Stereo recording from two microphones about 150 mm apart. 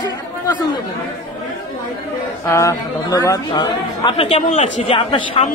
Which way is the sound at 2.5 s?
20° left (ahead or behind).